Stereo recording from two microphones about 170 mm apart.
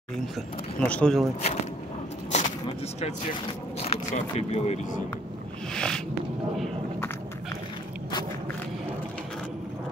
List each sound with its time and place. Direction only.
0.7 s speech: 5° left (ahead or behind)
2.3 s vehicle: 40° left (ahead or behind)
3.8 s speech: 40° left (ahead or behind)
5.8 s a sound: 5° left (ahead or behind)